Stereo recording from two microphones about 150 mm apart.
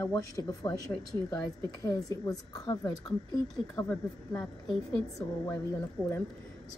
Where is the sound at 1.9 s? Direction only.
25° left (ahead or behind).